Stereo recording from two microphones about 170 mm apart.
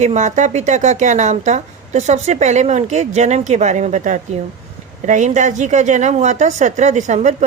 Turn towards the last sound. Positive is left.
turn(degrees=-45)  # may be behind; listen again after turning